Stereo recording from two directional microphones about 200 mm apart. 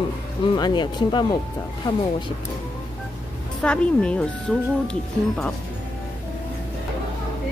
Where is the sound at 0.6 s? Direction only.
20° left (ahead or behind).